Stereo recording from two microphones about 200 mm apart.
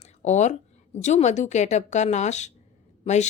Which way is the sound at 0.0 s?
35° left (ahead or behind).